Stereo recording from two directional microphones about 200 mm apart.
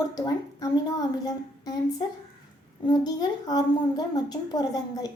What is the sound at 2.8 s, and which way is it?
A woman's voice, 20° left (ahead or behind).